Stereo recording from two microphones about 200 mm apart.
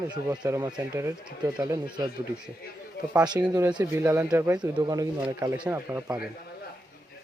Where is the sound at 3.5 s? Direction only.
15° right (ahead or behind).